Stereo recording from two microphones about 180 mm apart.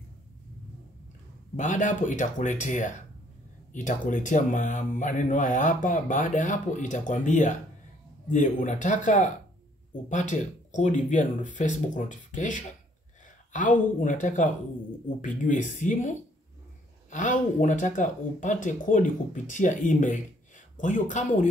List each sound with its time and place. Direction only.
1.6 s speech: 45° left (ahead or behind)